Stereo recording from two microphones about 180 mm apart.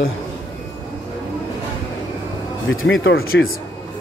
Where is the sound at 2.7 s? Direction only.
85° left; by 3.5 s 65° left (ahead or behind).